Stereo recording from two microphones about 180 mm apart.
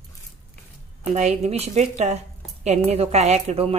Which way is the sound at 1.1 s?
40° right (ahead or behind).